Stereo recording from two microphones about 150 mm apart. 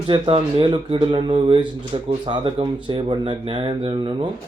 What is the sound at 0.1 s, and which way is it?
Speech, 40° right (ahead or behind).